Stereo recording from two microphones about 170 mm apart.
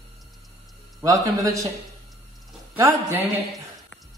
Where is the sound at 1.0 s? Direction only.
20° right (ahead or behind).